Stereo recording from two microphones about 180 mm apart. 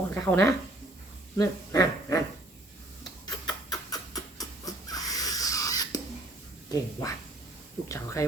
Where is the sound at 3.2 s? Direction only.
20° left (ahead or behind).